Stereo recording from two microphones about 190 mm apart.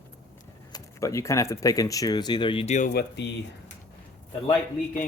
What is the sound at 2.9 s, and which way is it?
Speech, 60° left (ahead or behind).